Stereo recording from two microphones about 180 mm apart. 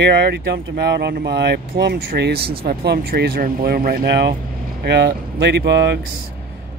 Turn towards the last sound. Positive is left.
turn(degrees=-75)  # may be behind; listen again after turning